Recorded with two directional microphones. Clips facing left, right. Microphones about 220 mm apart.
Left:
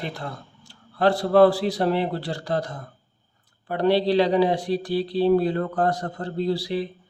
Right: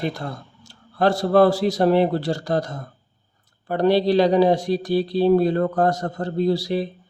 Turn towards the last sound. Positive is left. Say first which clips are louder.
# right 4 dB
turn(degrees=-45)  # may be behind; listen again after turning